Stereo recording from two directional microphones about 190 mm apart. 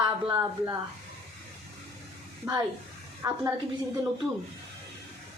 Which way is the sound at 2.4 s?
15° right (ahead or behind).